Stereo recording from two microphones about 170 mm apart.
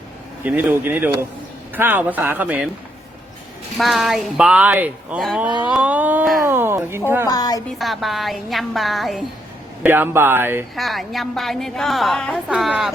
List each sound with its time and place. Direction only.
0.4 s speech: 10° right (ahead or behind)
3.8 s speech: centre (ahead or behind)
7.3 s a woman's voice: 25° left (ahead or behind)
7.7 s speech: centre (ahead or behind)
9.8 s speech: 10° right (ahead or behind)
10.8 s speech: centre (ahead or behind)